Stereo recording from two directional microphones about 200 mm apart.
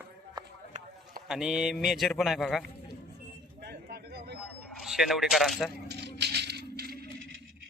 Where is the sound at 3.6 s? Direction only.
55° right (ahead or behind).